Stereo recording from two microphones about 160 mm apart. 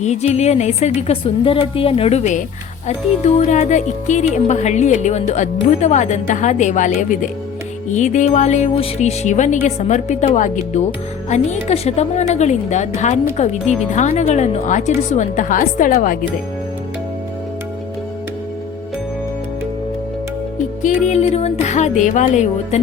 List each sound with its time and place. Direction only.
0.0 s a woman's voice: 45° left (ahead or behind)
21.0 s a woman's voice: 45° left (ahead or behind)